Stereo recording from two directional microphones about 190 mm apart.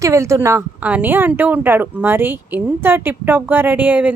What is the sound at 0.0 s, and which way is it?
A woman's voice, 15° right (ahead or behind).